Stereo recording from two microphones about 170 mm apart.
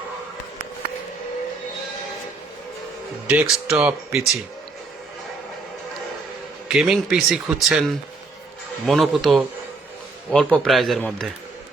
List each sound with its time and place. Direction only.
3.2 s speech: 5° right (ahead or behind)
6.7 s speech: centre (ahead or behind)
8.9 s speech: centre (ahead or behind)